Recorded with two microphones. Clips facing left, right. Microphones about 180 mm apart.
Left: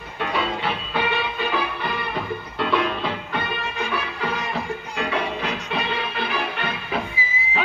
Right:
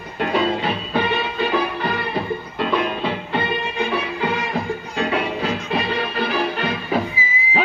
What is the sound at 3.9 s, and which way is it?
Music, 30° right (ahead or behind).